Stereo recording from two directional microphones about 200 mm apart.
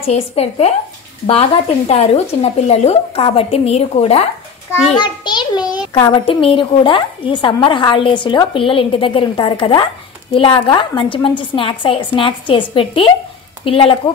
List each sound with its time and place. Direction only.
0.0 s speech: 30° left (ahead or behind)
5.0 s a sound: 20° left (ahead or behind)
6.2 s a woman's voice: 25° left (ahead or behind)